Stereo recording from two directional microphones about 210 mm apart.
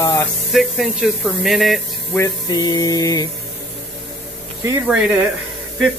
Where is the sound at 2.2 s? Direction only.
20° left (ahead or behind).